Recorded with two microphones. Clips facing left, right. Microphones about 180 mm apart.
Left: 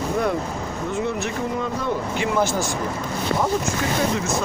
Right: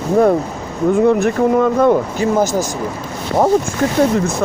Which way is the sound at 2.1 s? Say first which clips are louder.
Right 6 dB; 40° right (ahead or behind).